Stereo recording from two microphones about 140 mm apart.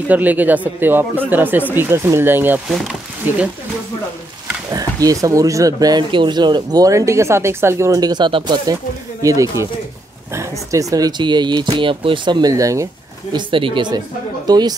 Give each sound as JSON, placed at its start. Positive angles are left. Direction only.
{"t": 0.1, "sound": "speech", "side_deg": -10}
{"t": 2.7, "sound": "speech", "side_deg": -5}
{"t": 4.6, "sound": "speech", "side_deg": -25}
{"t": 9.2, "sound": "speech", "side_deg": -25}
{"t": 13.3, "sound": "speech", "side_deg": -40}